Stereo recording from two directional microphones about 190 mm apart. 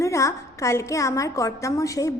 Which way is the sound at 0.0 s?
15° left (ahead or behind).